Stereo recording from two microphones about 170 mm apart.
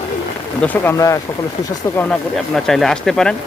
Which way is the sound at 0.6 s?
15° left (ahead or behind).